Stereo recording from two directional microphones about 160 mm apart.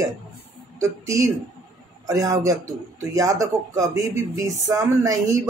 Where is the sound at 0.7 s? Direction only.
20° right (ahead or behind).